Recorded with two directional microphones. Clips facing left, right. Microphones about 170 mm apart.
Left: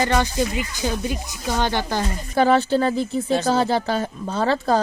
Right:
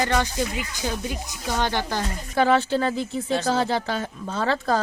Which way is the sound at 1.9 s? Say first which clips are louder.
Left 3 dB; 35° left (ahead or behind).